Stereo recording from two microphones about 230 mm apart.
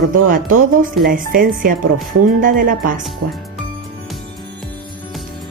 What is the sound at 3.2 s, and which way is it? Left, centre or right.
Speech, right.